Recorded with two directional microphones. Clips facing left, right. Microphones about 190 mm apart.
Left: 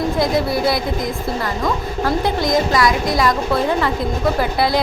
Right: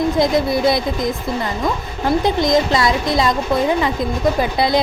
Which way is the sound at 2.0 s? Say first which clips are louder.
Right 3 dB; 20° right (ahead or behind).